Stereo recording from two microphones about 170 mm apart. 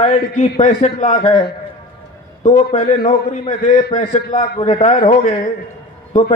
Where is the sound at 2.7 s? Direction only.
30° left (ahead or behind).